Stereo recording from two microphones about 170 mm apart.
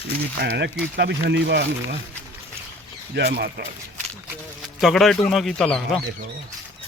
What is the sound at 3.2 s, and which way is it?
Speech, 70° right (ahead or behind).